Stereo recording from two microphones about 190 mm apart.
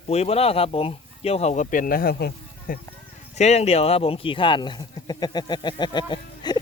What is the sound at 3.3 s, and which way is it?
Speech, 35° left (ahead or behind).